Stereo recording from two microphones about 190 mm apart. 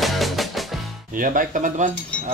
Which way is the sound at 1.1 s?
45° right (ahead or behind).